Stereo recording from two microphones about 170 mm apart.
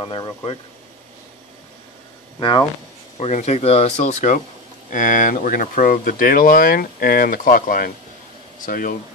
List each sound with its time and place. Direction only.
0.0 s speech: 25° left (ahead or behind)
3.2 s speech: 40° left (ahead or behind)